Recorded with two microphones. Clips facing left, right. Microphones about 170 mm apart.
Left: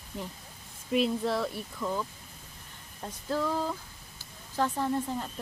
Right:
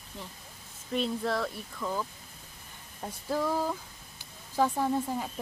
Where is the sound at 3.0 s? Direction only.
10° right (ahead or behind).